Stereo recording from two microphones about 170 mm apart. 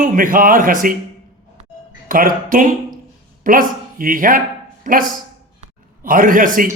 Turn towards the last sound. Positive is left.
turn(degrees=-55)  # may be behind; listen again after turning